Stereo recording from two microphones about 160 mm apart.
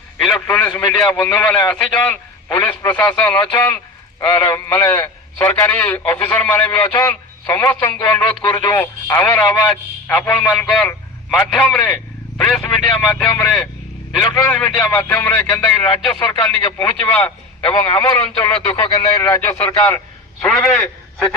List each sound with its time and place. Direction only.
0.2 s a man's voice: 5° left (ahead or behind)
17.7 s a man's voice: 25° left (ahead or behind); by 21.3 s 5° left (ahead or behind)